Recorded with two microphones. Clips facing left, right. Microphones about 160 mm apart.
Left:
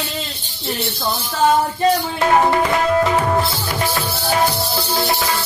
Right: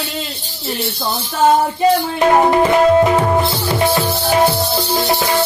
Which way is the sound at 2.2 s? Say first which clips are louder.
Right 4 dB; 20° right (ahead or behind).